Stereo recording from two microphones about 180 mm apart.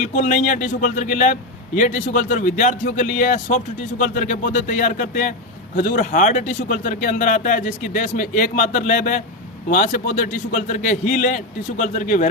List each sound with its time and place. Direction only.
0.0 s a man's voice: 45° left (ahead or behind)